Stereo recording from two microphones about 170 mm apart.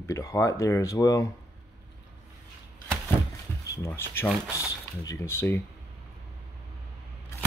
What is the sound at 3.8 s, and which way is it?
Speech, 15° left (ahead or behind).